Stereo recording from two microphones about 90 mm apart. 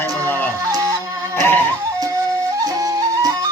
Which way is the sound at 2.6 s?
45° right (ahead or behind).